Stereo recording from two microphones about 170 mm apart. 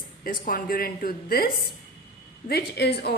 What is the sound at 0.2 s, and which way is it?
A woman's voice, 55° left (ahead or behind).